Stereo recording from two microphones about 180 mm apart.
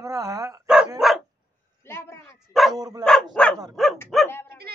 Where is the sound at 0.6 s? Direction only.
5° right (ahead or behind).